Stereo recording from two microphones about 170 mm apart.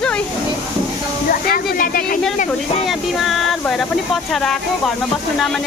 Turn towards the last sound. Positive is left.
turn(degrees=0)  # may be behind; listen again after turning